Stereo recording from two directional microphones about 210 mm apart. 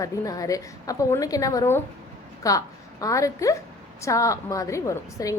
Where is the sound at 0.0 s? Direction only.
15° left (ahead or behind).